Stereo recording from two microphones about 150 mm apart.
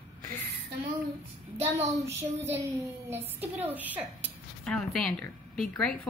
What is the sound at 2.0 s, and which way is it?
Speech, 15° right (ahead or behind).